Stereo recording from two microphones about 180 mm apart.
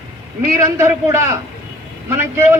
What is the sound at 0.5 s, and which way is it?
A man's voice, 15° right (ahead or behind).